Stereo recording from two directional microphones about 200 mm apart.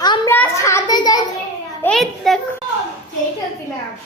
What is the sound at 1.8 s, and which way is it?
Speech, 5° left (ahead or behind).